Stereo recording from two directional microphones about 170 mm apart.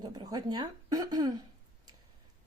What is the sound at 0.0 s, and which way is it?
Speech, 25° right (ahead or behind).